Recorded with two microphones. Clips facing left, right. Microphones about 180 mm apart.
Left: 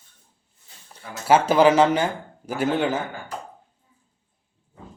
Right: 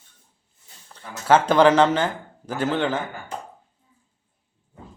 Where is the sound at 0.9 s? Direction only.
10° left (ahead or behind).